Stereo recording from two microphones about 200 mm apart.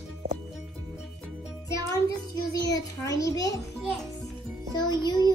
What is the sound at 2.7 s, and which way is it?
Speech, 15° left (ahead or behind).